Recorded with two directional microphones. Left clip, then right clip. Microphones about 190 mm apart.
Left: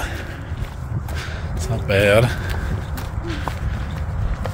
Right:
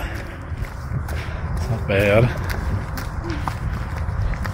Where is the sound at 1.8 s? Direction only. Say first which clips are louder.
Left 2 dB; 40° left (ahead or behind).